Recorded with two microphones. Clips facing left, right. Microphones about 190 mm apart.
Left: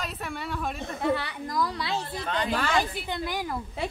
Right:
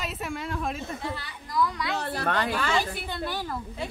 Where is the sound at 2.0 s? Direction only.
65° right (ahead or behind).